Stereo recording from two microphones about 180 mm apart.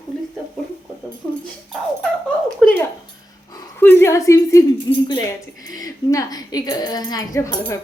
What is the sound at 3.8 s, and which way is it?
A woman's voice, 15° left (ahead or behind).